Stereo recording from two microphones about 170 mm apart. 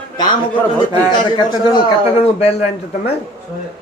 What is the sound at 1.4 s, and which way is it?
A man's voice, 35° left (ahead or behind).